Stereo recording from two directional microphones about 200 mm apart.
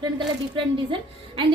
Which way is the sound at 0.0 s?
25° right (ahead or behind).